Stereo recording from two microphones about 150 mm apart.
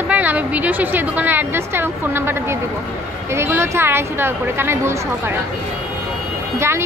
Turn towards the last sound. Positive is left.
turn(degrees=-15)  # may be behind; listen again after turning